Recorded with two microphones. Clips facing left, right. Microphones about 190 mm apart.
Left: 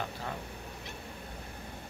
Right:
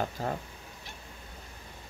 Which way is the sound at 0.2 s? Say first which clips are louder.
Right 6 dB; 45° right (ahead or behind).